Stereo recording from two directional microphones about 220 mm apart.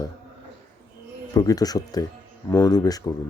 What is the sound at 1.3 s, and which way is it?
Speech, 15° left (ahead or behind).